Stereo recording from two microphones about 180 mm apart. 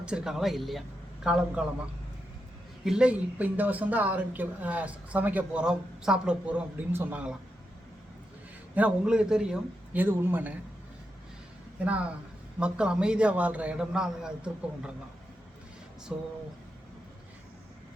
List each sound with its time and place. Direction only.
0.0 s a man's voice: 5° right (ahead or behind)
2.8 s speech: 5° right (ahead or behind)
8.7 s speech: 5° right (ahead or behind)
11.9 s a man's voice: 5° right (ahead or behind)
16.1 s speech: 5° right (ahead or behind)